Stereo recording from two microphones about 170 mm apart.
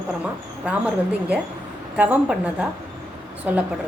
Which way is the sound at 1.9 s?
10° right (ahead or behind).